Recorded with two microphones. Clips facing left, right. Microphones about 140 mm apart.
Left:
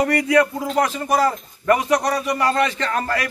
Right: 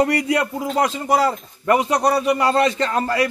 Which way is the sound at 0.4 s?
25° right (ahead or behind).